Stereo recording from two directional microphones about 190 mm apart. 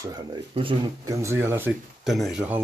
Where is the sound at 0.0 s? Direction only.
20° right (ahead or behind).